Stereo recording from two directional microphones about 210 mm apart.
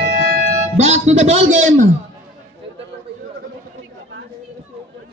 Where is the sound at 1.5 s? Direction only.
35° right (ahead or behind).